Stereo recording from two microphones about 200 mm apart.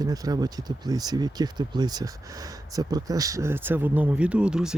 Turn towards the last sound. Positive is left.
turn(degrees=-5)  # may be behind; listen again after turning